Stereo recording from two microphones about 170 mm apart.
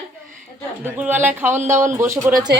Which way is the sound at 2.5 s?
70° right (ahead or behind).